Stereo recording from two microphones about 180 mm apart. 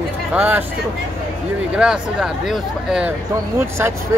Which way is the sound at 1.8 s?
5° right (ahead or behind).